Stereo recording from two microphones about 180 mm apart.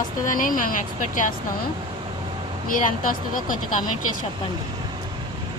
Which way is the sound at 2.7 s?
50° left (ahead or behind).